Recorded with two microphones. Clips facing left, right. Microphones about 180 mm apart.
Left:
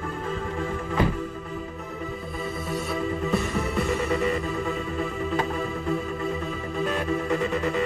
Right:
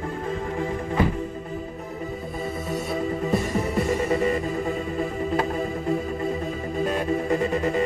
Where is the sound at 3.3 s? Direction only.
45° right (ahead or behind).